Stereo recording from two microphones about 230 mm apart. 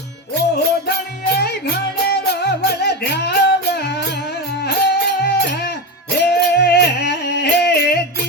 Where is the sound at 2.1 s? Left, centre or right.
Left.